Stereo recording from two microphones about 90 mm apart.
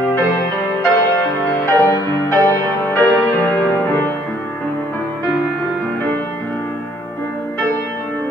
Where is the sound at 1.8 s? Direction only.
30° left (ahead or behind).